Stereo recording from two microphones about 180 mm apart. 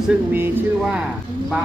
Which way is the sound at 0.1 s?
10° right (ahead or behind).